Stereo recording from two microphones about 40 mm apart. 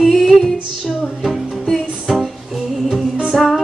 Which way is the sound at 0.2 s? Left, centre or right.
Centre.